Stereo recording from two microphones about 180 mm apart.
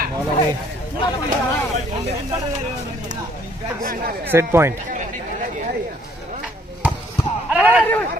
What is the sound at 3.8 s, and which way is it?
Speech, 55° right (ahead or behind).